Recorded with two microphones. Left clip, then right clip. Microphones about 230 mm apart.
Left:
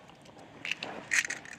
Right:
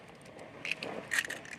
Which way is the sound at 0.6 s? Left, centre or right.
Centre.